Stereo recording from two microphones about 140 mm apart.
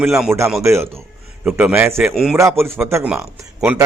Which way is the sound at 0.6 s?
20° right (ahead or behind).